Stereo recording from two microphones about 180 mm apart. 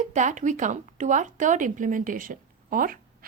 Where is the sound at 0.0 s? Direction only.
40° right (ahead or behind).